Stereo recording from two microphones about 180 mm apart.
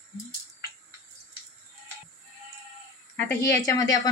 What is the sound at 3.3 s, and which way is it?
Speech, 15° left (ahead or behind).